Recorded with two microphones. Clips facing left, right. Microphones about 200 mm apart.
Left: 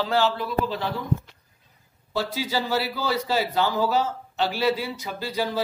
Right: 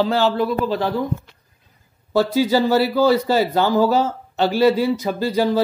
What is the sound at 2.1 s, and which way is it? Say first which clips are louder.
A man's voice: right 10 dB; 45° right (ahead or behind).